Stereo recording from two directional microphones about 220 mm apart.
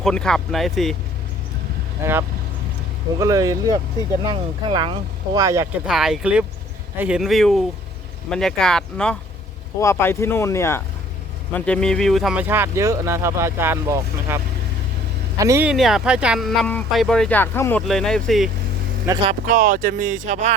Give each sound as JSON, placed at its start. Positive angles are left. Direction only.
{"t": 0.0, "sound": "speech", "side_deg": 5}
{"t": 2.0, "sound": "speech", "side_deg": -10}
{"t": 3.2, "sound": "speech", "side_deg": -15}
{"t": 5.9, "sound": "speech", "side_deg": 0}
{"t": 19.0, "sound": "speech", "side_deg": -20}
{"t": 19.3, "sound": "speech", "side_deg": -35}